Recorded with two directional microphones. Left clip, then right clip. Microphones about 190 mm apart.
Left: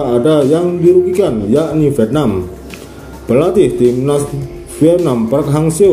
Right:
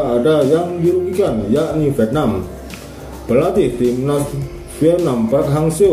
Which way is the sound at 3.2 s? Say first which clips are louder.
Left 4 dB; 35° left (ahead or behind).